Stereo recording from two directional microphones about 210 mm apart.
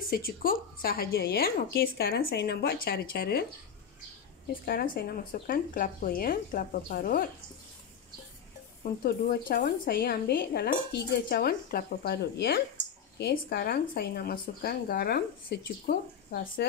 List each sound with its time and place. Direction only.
0.1 s speech: 45° left (ahead or behind)
4.6 s speech: 45° left (ahead or behind)
8.8 s speech: 50° left (ahead or behind)